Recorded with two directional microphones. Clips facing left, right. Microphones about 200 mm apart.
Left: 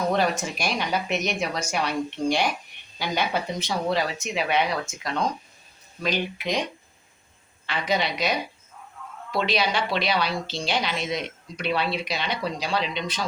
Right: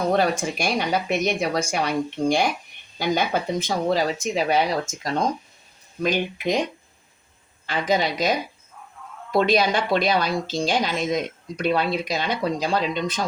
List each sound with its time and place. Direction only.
0.6 s speech: 50° right (ahead or behind)
7.7 s speech: 45° right (ahead or behind)